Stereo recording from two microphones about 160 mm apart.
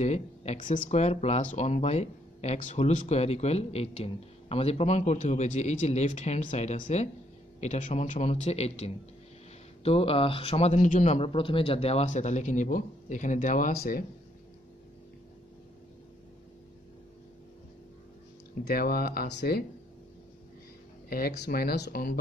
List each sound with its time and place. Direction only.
0.0 s speech: 45° left (ahead or behind); by 14.0 s 70° left (ahead or behind)
18.6 s speech: 80° left
21.1 s speech: 80° left